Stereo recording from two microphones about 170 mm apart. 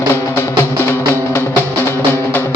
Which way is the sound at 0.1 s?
15° left (ahead or behind).